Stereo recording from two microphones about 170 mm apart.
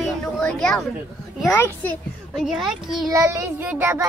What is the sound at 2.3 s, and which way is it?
Speech, centre (ahead or behind).